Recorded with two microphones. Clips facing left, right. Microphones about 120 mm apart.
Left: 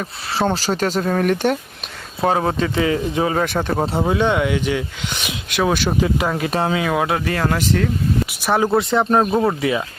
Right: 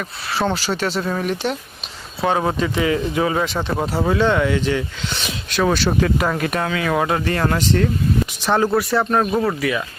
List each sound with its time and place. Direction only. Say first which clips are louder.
0.0 s speech: left 1 dB; 40° left (ahead or behind)
2.2 s speech: left 1 dB; 35° left (ahead or behind)
3.4 s speech: left 2 dB; 55° left (ahead or behind)
3.8 s speech: left 1 dB; 25° left (ahead or behind)
4.0 s speech: right 2 dB; 15° left (ahead or behind)
6.8 s speech: even; 5° left (ahead or behind); by 9.8 s 25° left (ahead or behind)